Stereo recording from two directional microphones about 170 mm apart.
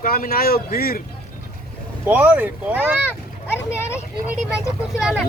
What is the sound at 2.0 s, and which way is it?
Speech, 10° right (ahead or behind).